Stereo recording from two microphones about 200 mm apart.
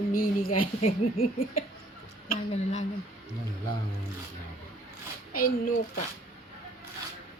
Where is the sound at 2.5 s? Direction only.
35° left (ahead or behind).